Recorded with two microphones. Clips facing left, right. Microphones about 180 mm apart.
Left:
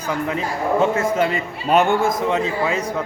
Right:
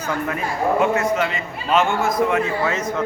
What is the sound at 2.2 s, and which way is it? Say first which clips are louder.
Speech: even; 20° left (ahead or behind).